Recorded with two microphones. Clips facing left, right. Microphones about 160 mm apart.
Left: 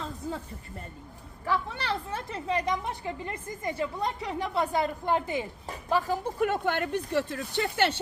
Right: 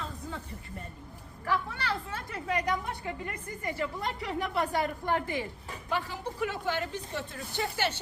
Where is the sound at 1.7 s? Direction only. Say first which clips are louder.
Left 2 dB; 25° left (ahead or behind).